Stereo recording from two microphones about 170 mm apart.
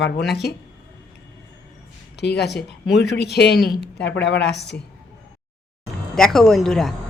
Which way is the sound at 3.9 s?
90° left.